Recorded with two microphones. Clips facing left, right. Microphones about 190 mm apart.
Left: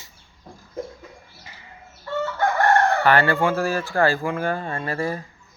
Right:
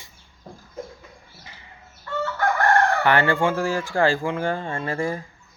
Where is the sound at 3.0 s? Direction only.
15° right (ahead or behind).